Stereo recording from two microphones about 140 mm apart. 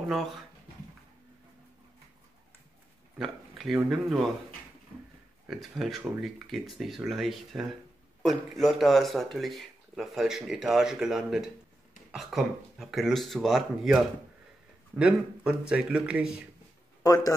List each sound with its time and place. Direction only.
3.2 s a sound: centre (ahead or behind)
3.9 s speech: centre (ahead or behind)
5.5 s speech: centre (ahead or behind)
17.0 s a man's voice: 25° left (ahead or behind)